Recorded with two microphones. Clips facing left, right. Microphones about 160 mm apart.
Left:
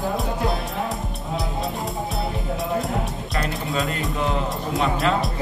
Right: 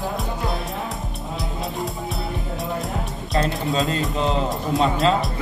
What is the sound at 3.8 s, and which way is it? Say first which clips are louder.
Speech: right 1 dB; 20° right (ahead or behind).